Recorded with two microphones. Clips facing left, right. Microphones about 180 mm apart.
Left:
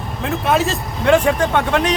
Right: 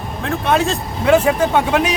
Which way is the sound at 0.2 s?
Centre (ahead or behind).